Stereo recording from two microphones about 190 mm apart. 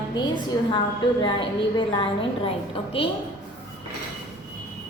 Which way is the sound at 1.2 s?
25° left (ahead or behind).